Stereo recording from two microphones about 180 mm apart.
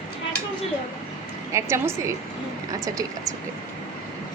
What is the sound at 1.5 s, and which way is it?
Speech, 15° right (ahead or behind).